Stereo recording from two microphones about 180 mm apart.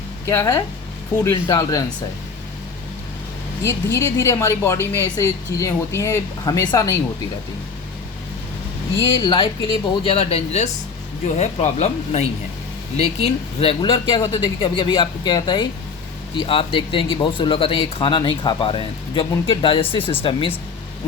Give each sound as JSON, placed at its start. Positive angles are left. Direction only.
{"t": 0.3, "sound": "speech", "side_deg": 15}
{"t": 3.6, "sound": "speech", "side_deg": 15}
{"t": 9.1, "sound": "speech", "side_deg": 30}